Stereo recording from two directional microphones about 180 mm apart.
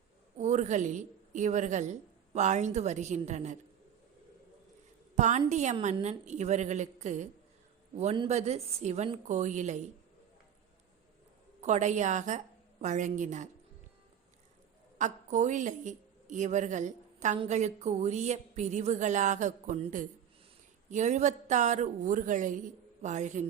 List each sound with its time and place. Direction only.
0.3 s a woman's voice: 40° right (ahead or behind)
5.1 s a woman's voice: 40° right (ahead or behind)
11.6 s a woman's voice: 40° right (ahead or behind)
14.9 s a woman's voice: 45° right (ahead or behind)